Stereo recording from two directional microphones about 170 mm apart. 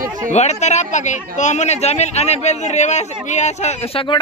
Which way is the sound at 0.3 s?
40° left (ahead or behind).